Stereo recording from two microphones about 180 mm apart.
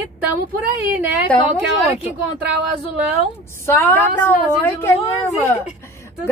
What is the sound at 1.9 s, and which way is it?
Speech, 5° right (ahead or behind).